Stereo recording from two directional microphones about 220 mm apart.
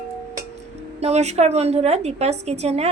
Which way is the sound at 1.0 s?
30° right (ahead or behind).